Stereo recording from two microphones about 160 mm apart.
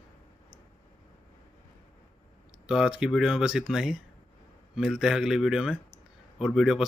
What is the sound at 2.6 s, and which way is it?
Speech, 5° right (ahead or behind).